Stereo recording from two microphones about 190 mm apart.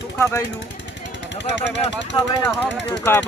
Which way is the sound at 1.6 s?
70° left (ahead or behind).